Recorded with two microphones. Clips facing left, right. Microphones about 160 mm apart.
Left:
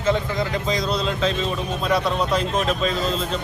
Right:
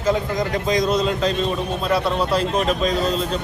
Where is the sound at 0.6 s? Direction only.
45° right (ahead or behind).